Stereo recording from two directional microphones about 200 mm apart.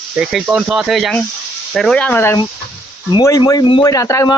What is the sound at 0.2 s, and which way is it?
Speech, 5° right (ahead or behind).